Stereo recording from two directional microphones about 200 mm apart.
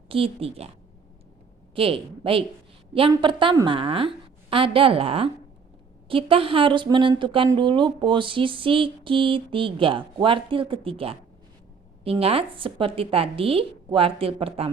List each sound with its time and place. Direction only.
0.1 s a woman's voice: 30° right (ahead or behind)
1.7 s a woman's voice: 25° right (ahead or behind)